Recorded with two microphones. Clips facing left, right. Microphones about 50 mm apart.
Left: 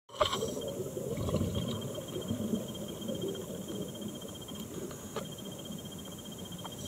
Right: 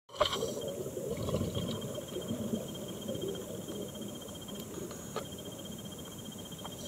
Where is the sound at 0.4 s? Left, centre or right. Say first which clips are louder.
Even; left.